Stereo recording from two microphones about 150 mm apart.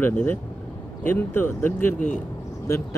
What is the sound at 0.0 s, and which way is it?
Speech, 10° left (ahead or behind).